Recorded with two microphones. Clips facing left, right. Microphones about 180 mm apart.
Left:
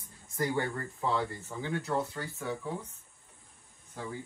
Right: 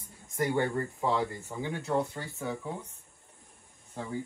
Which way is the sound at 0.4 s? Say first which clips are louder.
Right 3 dB; 20° right (ahead or behind).